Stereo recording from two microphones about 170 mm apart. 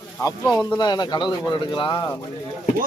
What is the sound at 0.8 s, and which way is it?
Speech, 25° left (ahead or behind).